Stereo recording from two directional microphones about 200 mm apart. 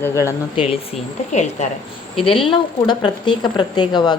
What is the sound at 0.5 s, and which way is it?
Speech, 30° left (ahead or behind).